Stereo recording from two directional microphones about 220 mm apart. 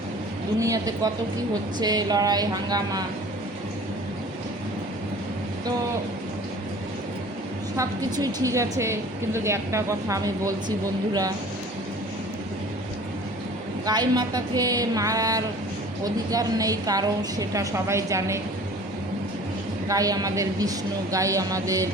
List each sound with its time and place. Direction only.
0.6 s a woman's voice: 15° right (ahead or behind)
7.8 s a woman's voice: 15° right (ahead or behind)
13.8 s a woman's voice: 20° right (ahead or behind)
19.9 s a woman's voice: 15° right (ahead or behind)